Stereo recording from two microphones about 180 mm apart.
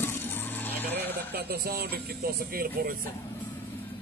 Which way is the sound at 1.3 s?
60° right (ahead or behind).